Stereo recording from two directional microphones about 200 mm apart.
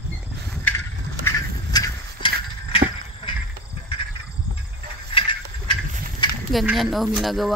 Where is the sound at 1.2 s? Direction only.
20° left (ahead or behind).